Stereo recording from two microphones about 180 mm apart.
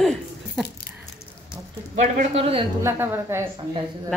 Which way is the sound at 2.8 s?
15° right (ahead or behind).